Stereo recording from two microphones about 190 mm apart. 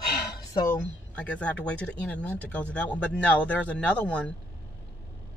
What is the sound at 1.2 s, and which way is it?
Speech, 5° left (ahead or behind).